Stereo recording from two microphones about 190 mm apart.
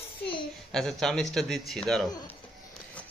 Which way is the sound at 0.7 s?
5° left (ahead or behind).